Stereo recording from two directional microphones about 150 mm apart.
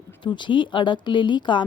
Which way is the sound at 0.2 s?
30° left (ahead or behind).